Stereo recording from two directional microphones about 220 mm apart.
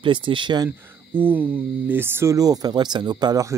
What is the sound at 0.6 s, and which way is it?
Speech, 10° right (ahead or behind).